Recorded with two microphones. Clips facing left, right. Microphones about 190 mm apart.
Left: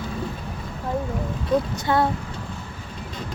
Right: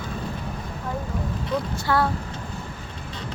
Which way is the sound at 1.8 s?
20° left (ahead or behind).